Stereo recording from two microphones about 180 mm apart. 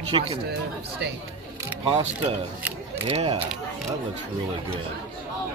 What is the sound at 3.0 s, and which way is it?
Speech, 30° right (ahead or behind).